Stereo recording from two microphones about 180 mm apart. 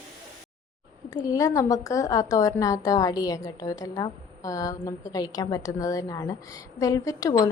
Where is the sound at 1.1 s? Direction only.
20° left (ahead or behind).